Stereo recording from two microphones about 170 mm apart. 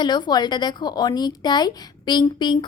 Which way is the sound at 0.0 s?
25° left (ahead or behind).